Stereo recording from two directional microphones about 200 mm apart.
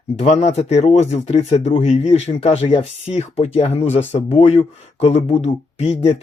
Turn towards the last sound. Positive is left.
turn(degrees=35)  # may be behind; listen again after turning